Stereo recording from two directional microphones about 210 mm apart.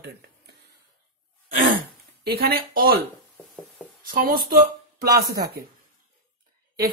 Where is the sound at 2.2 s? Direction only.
50° right (ahead or behind).